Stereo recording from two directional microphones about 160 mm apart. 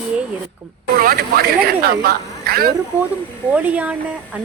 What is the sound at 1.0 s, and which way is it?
Speech, 70° right (ahead or behind).